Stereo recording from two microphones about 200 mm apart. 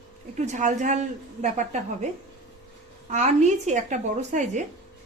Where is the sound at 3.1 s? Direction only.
35° right (ahead or behind).